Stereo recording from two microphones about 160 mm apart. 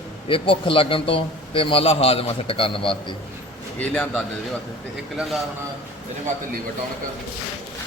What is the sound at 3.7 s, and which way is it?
A man's voice, 10° left (ahead or behind).